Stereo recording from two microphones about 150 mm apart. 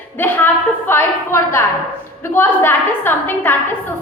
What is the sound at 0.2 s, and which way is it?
A woman's voice, 15° left (ahead or behind).